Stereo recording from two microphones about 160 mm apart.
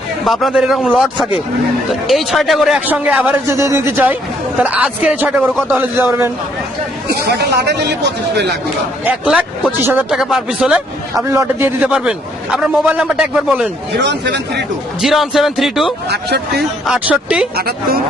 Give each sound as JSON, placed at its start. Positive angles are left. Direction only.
{"t": 0.3, "sound": "a man's voice", "side_deg": 0}
{"t": 7.3, "sound": "speech", "side_deg": -90}
{"t": 9.0, "sound": "a man's voice", "side_deg": -5}
{"t": 14.0, "sound": "speech", "side_deg": -90}
{"t": 15.0, "sound": "a man's voice", "side_deg": 0}
{"t": 16.0, "sound": "speech", "side_deg": -90}
{"t": 16.8, "sound": "a man's voice", "side_deg": -5}
{"t": 17.6, "sound": "a woman's voice", "side_deg": -70}